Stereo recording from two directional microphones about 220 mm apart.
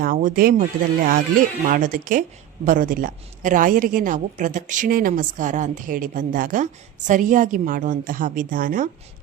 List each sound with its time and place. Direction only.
0.0 s a woman's voice: 40° right (ahead or behind)